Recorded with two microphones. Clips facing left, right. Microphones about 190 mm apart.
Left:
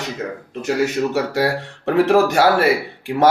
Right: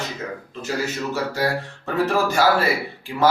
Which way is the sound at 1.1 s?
70° left (ahead or behind).